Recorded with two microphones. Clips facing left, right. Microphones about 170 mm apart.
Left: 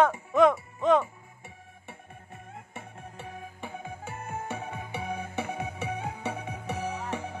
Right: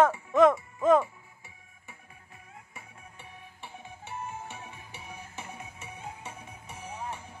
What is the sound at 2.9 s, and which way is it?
Music, 90° left.